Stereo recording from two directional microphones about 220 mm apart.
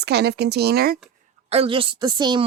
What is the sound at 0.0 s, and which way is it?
Speech, 50° right (ahead or behind).